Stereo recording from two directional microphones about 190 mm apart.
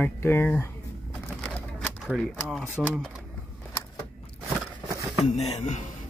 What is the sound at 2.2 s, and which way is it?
Speech, 5° left (ahead or behind).